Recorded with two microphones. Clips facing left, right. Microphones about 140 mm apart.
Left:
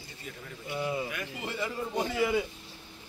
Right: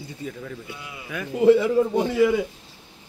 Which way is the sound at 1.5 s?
90° right.